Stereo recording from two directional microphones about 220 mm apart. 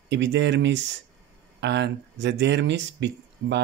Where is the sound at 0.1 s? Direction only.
50° right (ahead or behind).